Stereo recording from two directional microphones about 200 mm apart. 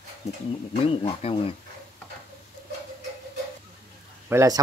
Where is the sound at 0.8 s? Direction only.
30° left (ahead or behind).